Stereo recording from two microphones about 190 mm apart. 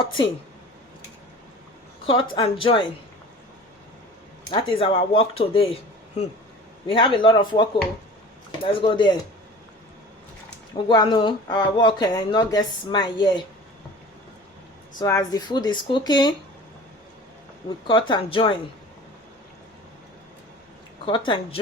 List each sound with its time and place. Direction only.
0.0 s speech: 25° left (ahead or behind)
2.3 s speech: 30° left (ahead or behind)
4.5 s speech: 30° left (ahead or behind)
6.8 s speech: 25° left (ahead or behind)
10.8 s speech: 25° left (ahead or behind)
14.9 s speech: 20° left (ahead or behind)
17.8 s speech: 25° left (ahead or behind)
21.0 s speech: 25° left (ahead or behind)